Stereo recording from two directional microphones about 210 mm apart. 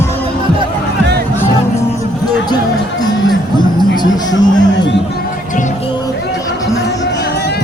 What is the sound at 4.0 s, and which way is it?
Music, 20° left (ahead or behind).